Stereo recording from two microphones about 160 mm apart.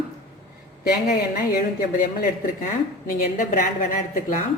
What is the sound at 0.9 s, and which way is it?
A woman's voice, 70° left (ahead or behind).